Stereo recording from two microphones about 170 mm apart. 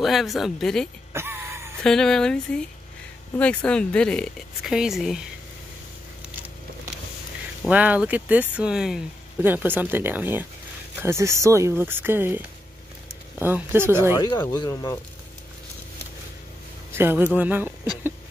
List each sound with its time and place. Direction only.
0.0 s speech: centre (ahead or behind)
1.1 s a sound: 15° right (ahead or behind)
1.8 s speech: 5° left (ahead or behind)
7.6 s speech: 10° right (ahead or behind)
14.1 s speech: 25° left (ahead or behind)
16.9 s speech: 15° right (ahead or behind)